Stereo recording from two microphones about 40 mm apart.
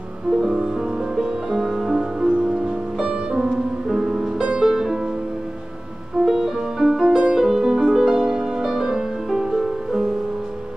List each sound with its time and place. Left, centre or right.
1.1 s music: centre
3.4 s music: centre
4.4 s music: right
4.6 s music: centre
6.2 s music: centre
7.0 s music: right